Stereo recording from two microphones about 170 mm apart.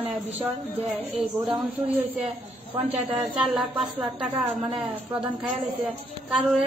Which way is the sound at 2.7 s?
35° right (ahead or behind).